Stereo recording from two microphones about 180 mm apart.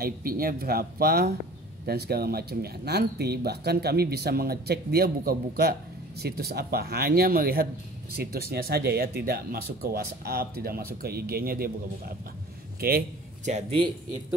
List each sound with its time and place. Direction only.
0.0 s speech: 55° right (ahead or behind)
12.8 s speech: 55° right (ahead or behind)
13.5 s speech: 30° right (ahead or behind)